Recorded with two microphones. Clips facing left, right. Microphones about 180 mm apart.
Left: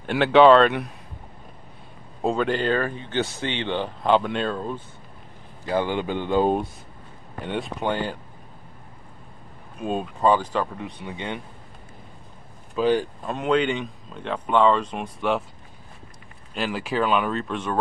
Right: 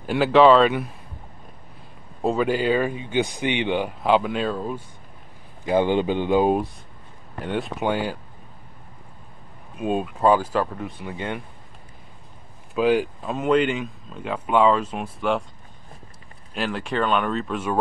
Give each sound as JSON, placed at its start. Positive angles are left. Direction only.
{"t": 0.0, "sound": "speech", "side_deg": 0}
{"t": 2.2, "sound": "speech", "side_deg": -5}
{"t": 5.7, "sound": "speech", "side_deg": -20}
{"t": 7.4, "sound": "speech", "side_deg": 0}
{"t": 9.8, "sound": "speech", "side_deg": -5}
{"t": 12.7, "sound": "speech", "side_deg": -5}
{"t": 16.5, "sound": "speech", "side_deg": 0}